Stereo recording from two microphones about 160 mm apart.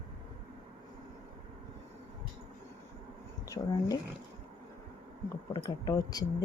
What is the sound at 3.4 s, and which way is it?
Speech, 20° left (ahead or behind).